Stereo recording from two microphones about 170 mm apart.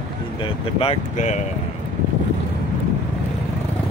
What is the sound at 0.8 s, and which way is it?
Speech, 40° left (ahead or behind).